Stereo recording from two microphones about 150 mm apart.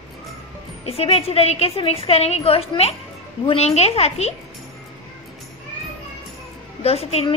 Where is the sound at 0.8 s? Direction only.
40° left (ahead or behind).